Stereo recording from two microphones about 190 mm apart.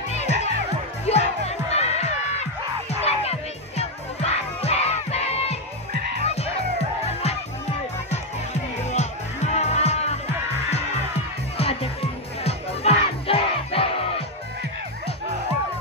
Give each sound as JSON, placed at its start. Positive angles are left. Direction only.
{"t": 0.1, "sound": "music", "side_deg": 35}
{"t": 8.9, "sound": "music", "side_deg": 35}
{"t": 11.5, "sound": "music", "side_deg": 30}